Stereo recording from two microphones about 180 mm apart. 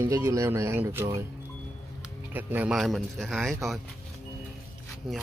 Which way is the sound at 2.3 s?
10° right (ahead or behind).